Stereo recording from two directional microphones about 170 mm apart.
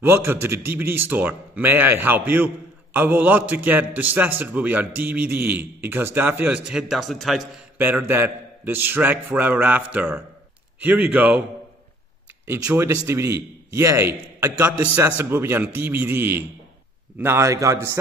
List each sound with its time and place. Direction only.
0.0 s a man's voice: 15° right (ahead or behind)
7.7 s a man's voice: 10° right (ahead or behind)
12.4 s a man's voice: 15° right (ahead or behind)